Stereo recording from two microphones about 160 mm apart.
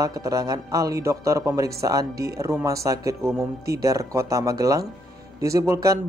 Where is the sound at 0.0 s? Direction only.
20° right (ahead or behind).